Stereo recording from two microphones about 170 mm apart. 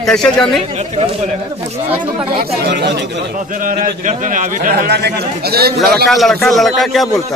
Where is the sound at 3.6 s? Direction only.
50° right (ahead or behind); by 5.8 s 65° right (ahead or behind).